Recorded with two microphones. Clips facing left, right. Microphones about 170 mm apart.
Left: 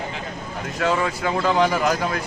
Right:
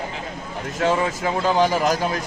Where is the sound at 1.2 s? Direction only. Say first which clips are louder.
Left 1 dB; 30° right (ahead or behind).